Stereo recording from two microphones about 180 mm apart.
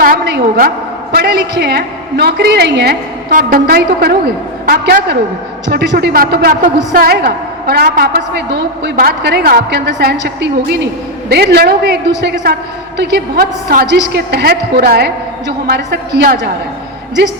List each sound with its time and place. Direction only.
0.0 s a woman's voice: 65° right (ahead or behind)
3.2 s a woman's voice: 55° right (ahead or behind)
5.6 s a woman's voice: 75° right (ahead or behind)
13.3 s a woman's voice: 55° right (ahead or behind)